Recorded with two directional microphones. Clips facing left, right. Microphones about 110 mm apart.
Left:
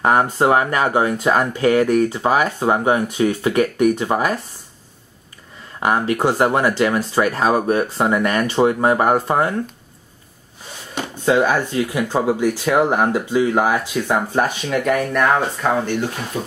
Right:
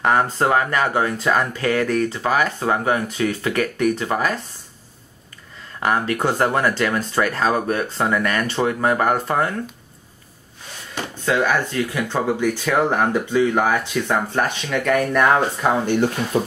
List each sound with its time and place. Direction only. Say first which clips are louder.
0.0 s speech: left 2 dB; 20° left (ahead or behind)
5.8 s speech: left 2 dB; 15° left (ahead or behind)
11.2 s speech: left 3 dB; 20° left (ahead or behind); by 15.7 s 5° right (ahead or behind)
16.3 s speech: right 6 dB; 50° right (ahead or behind)